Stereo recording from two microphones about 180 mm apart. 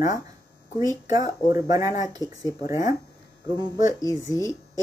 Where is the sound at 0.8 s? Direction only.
20° right (ahead or behind).